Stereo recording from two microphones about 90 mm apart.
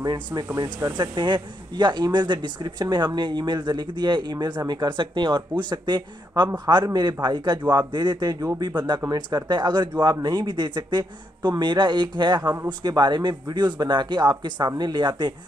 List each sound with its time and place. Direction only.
0.0 s speech: 50° right (ahead or behind)
8.6 s speech: 55° right (ahead or behind)